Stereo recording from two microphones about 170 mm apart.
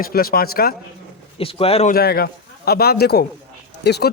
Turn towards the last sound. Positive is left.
turn(degrees=75)  # may be behind; listen again after turning